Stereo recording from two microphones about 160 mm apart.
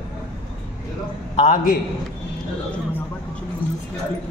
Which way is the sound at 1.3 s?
50° left (ahead or behind).